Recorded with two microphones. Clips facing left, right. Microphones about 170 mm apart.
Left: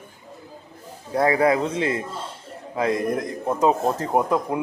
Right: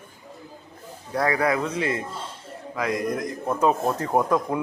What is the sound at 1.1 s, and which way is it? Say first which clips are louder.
A man's voice: left 4 dB; 25° left (ahead or behind).